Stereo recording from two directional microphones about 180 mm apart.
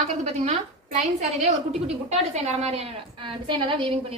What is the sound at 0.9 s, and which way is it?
A woman's voice, 40° right (ahead or behind).